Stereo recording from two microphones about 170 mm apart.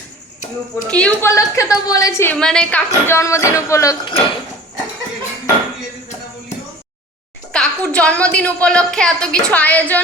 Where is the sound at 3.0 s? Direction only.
15° left (ahead or behind).